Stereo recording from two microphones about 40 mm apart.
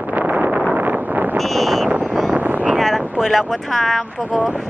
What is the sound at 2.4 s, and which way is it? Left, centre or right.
Wind noise, right.